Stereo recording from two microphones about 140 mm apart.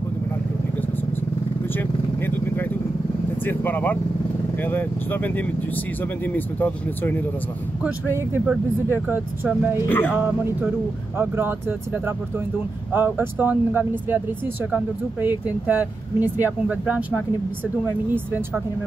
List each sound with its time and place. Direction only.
3.4 s speech: 15° left (ahead or behind)
8.5 s speech: 15° right (ahead or behind)
9.8 s speech: 15° left (ahead or behind)
10.2 s speech: 15° right (ahead or behind)
12.9 s speech: 15° right (ahead or behind)
15.2 s speech: 10° right (ahead or behind)